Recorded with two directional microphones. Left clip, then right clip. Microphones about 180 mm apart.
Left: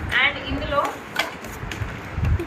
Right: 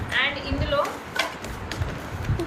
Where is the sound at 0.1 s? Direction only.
5° right (ahead or behind).